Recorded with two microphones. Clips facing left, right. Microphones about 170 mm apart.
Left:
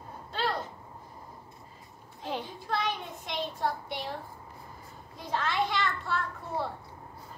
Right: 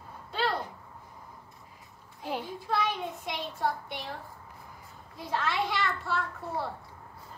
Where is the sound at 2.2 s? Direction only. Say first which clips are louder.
Right 1 dB; 10° right (ahead or behind).